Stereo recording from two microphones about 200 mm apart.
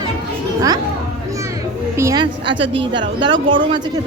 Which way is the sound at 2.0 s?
15° right (ahead or behind).